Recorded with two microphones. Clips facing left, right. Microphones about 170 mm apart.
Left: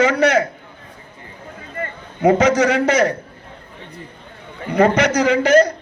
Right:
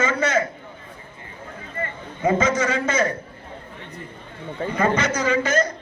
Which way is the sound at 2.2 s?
70° left (ahead or behind).